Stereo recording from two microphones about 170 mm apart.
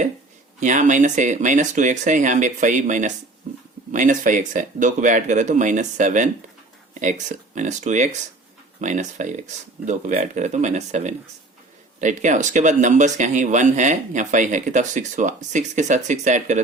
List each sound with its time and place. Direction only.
0.6 s speech: 45° right (ahead or behind)